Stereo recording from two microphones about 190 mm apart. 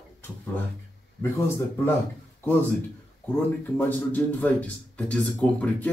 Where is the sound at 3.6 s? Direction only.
10° left (ahead or behind).